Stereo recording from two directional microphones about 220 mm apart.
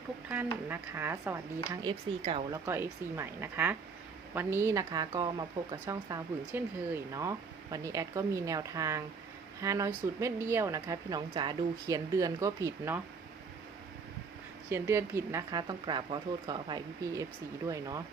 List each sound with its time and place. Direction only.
0.3 s speech: 10° right (ahead or behind)
14.7 s speech: 10° right (ahead or behind)